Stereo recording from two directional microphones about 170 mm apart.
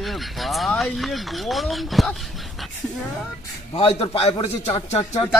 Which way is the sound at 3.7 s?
35° left (ahead or behind).